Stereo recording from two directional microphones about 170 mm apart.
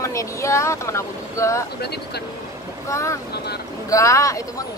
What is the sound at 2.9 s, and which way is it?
Speech, 15° left (ahead or behind).